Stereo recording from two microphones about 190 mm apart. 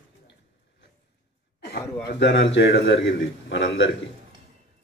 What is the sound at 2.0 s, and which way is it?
A man's voice, 65° left (ahead or behind).